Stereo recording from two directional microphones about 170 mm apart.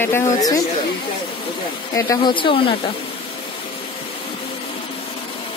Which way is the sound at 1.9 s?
25° left (ahead or behind).